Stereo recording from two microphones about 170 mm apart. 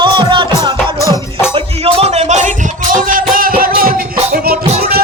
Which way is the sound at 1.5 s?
35° right (ahead or behind).